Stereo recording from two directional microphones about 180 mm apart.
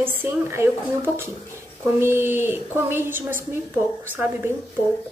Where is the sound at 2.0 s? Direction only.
10° right (ahead or behind).